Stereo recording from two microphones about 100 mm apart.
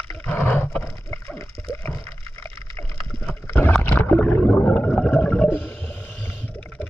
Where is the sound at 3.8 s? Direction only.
15° left (ahead or behind).